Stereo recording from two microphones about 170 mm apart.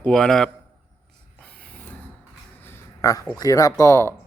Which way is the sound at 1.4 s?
10° left (ahead or behind).